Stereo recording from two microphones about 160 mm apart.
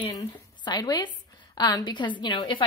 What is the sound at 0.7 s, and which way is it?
A woman's voice, 25° left (ahead or behind).